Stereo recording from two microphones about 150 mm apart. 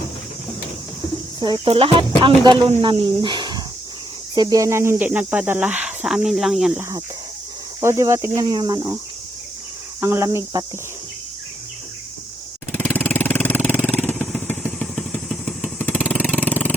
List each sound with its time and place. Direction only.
1.6 s speech: 40° right (ahead or behind); by 6.7 s centre (ahead or behind)
7.8 s speech: 20° right (ahead or behind)
10.0 s speech: 15° right (ahead or behind)
12.7 s vehicle: 15° left (ahead or behind)
13.8 s motorcycle: 10° left (ahead or behind)
15.1 s vehicle: centre (ahead or behind)